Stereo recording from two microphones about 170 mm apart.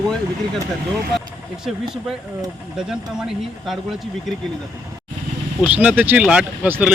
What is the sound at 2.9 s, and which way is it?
Speech, 5° right (ahead or behind).